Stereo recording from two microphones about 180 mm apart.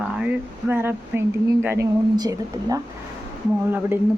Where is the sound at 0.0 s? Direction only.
5° right (ahead or behind).